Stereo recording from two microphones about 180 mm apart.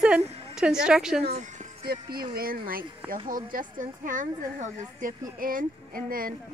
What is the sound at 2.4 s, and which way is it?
Speech, 55° right (ahead or behind).